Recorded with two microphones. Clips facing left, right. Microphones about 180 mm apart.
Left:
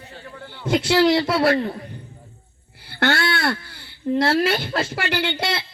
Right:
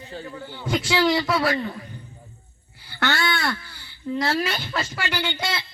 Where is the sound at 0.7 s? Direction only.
60° left (ahead or behind).